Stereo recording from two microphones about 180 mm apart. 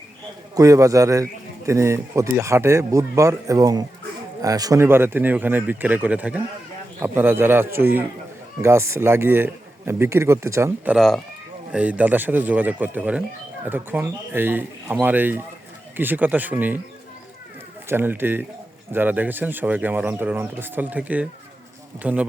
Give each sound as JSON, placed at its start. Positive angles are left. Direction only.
{"t": 0.5, "sound": "a man's voice", "side_deg": -20}
{"t": 10.9, "sound": "a man's voice", "side_deg": 0}
{"t": 17.8, "sound": "a man's voice", "side_deg": -10}